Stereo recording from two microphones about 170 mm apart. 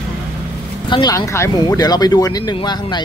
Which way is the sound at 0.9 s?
25° left (ahead or behind).